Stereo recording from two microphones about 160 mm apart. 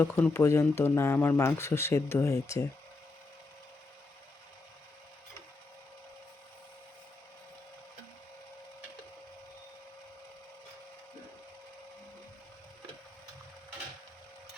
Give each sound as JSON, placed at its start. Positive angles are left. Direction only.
{"t": 0.0, "sound": "speech", "side_deg": 15}